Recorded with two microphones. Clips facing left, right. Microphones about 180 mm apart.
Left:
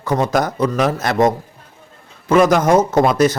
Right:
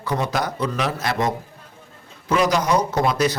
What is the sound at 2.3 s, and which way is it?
A man's voice, 50° left (ahead or behind).